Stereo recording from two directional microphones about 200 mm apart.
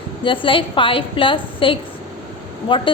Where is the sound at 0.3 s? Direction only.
25° left (ahead or behind).